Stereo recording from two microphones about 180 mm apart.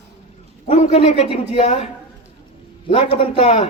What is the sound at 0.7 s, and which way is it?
Speech, 40° left (ahead or behind).